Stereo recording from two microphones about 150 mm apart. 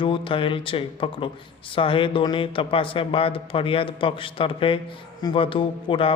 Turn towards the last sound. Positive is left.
turn(degrees=35)  # may be behind; listen again after turning